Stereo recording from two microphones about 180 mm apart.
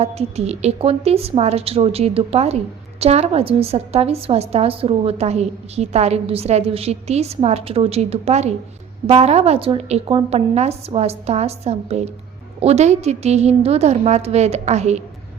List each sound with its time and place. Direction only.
0.0 s a woman's voice: 35° right (ahead or behind)